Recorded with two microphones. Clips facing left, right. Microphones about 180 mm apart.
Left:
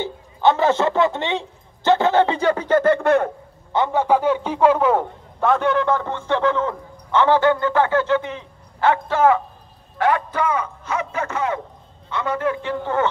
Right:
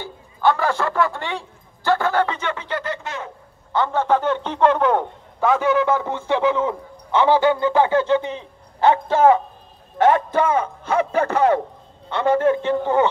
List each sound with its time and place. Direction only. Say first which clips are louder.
0.0 s a man's voice: left 2 dB; 20° left (ahead or behind); by 3.3 s 60° left (ahead or behind)
3.7 s a man's voice: left 1 dB; 15° left (ahead or behind); by 13.1 s 15° right (ahead or behind)